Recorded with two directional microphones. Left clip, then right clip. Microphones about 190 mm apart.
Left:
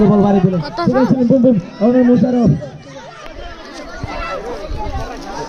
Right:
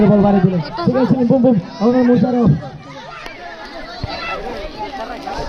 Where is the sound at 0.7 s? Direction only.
25° left (ahead or behind).